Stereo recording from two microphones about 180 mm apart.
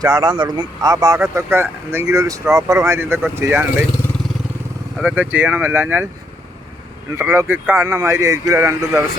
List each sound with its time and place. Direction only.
0.0 s speech: 20° right (ahead or behind)
4.9 s speech: 10° right (ahead or behind)
7.2 s speech: 15° right (ahead or behind)